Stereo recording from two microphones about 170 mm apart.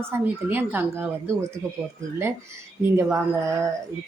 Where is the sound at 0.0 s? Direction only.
10° right (ahead or behind).